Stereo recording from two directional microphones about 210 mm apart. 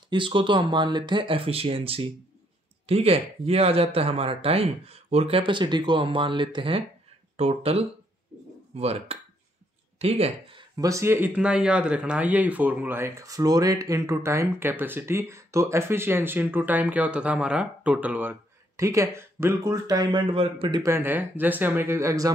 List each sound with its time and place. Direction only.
0.1 s speech: 25° right (ahead or behind)
10.8 s speech: 15° right (ahead or behind)